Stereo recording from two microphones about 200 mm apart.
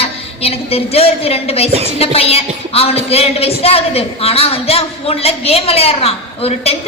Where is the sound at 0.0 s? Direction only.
30° left (ahead or behind).